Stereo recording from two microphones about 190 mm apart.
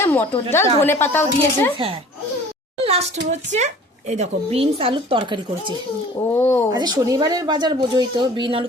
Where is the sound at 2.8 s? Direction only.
35° right (ahead or behind).